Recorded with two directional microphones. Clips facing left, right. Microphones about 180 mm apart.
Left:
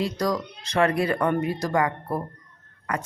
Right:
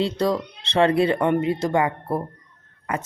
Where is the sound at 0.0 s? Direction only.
25° right (ahead or behind).